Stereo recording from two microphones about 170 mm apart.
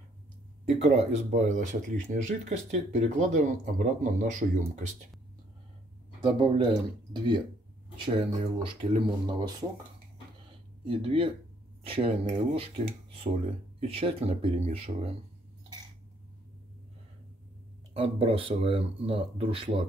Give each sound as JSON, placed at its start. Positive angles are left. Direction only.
{"t": 0.7, "sound": "speech", "side_deg": -45}
{"t": 6.2, "sound": "speech", "side_deg": -30}
{"t": 10.9, "sound": "speech", "side_deg": -30}
{"t": 17.9, "sound": "speech", "side_deg": -35}